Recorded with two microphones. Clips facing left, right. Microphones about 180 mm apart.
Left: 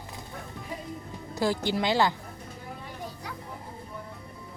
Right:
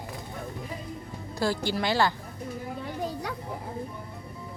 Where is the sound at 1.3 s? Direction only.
20° left (ahead or behind).